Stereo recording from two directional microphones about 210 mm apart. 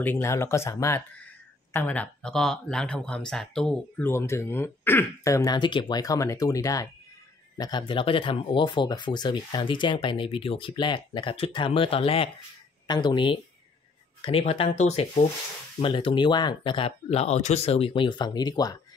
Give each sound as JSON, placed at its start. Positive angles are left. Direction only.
{"t": 0.0, "sound": "speech", "side_deg": 10}